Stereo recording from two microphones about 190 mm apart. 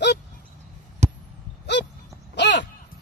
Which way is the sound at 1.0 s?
35° right (ahead or behind).